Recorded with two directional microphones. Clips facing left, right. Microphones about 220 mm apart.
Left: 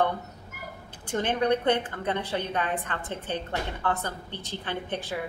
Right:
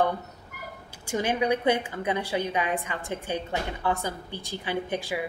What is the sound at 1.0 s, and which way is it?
A woman's voice, 10° right (ahead or behind).